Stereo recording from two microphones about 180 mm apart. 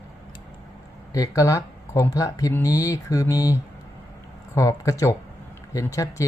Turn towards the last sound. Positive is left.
turn(degrees=20)  # may be behind; listen again after turning